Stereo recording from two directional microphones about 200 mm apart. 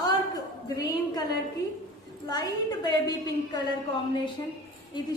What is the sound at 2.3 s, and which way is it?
A woman's voice, 20° left (ahead or behind).